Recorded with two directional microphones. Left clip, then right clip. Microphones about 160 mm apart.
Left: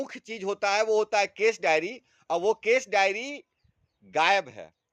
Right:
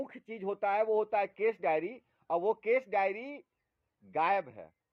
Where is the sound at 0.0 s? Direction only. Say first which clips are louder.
Left 6 dB; 25° left (ahead or behind).